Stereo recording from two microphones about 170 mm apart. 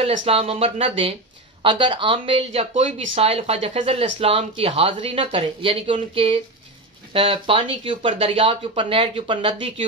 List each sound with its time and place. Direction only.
0.2 s speech: 35° right (ahead or behind)